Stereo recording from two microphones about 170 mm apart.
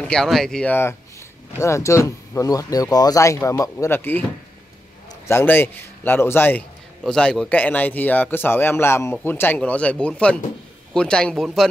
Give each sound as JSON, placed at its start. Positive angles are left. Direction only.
{"t": 0.0, "sound": "speech", "side_deg": 5}
{"t": 5.3, "sound": "speech", "side_deg": 10}